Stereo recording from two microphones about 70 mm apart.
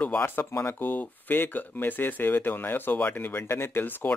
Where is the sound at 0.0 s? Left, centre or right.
Left.